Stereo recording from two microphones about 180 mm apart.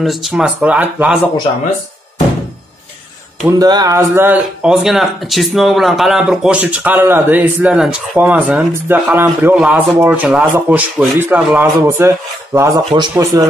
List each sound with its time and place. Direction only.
0.0 s speech: centre (ahead or behind)
3.4 s speech: 20° right (ahead or behind)
12.5 s speech: 20° right (ahead or behind)